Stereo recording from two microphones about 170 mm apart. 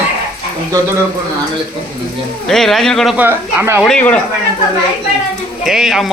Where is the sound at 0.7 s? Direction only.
20° right (ahead or behind).